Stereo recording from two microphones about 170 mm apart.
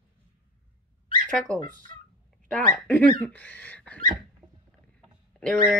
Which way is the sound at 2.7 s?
10° left (ahead or behind).